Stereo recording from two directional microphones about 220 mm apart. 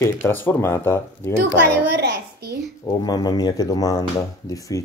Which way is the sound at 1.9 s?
45° right (ahead or behind).